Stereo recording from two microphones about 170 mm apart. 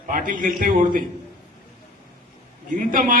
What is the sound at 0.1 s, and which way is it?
Speech, 50° right (ahead or behind).